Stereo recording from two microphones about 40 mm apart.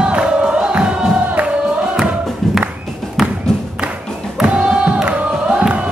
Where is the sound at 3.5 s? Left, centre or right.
Centre.